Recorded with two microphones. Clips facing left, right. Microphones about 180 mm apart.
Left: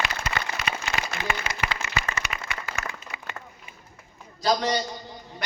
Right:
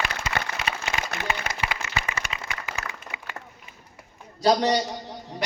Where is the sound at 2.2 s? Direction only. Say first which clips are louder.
Left 1 dB; 50° right (ahead or behind).